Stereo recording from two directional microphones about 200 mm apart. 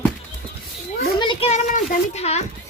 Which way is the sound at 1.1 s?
25° left (ahead or behind).